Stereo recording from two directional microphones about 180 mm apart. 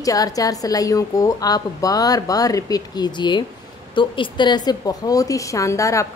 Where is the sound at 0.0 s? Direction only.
20° left (ahead or behind).